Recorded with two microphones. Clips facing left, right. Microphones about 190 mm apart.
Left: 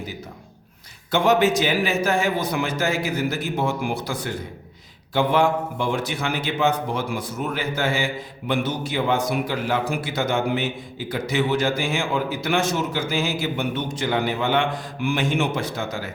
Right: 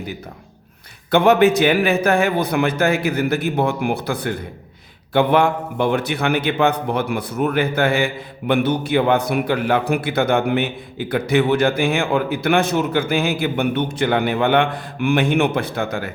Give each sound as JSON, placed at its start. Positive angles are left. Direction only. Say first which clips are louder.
{"t": 1.1, "sound": "a man's voice", "louder": "right 5 dB", "side_deg": -60}